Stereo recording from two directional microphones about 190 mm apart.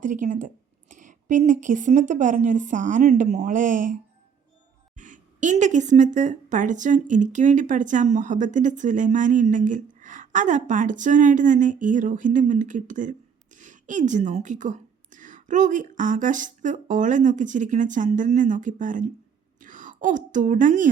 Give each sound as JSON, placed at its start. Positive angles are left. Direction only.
{"t": 0.0, "sound": "a woman's voice", "side_deg": -40}
{"t": 4.9, "sound": "a woman's voice", "side_deg": -40}